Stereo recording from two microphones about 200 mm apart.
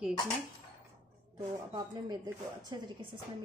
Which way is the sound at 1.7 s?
20° right (ahead or behind).